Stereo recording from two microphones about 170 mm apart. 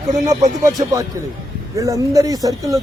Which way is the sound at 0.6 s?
20° right (ahead or behind).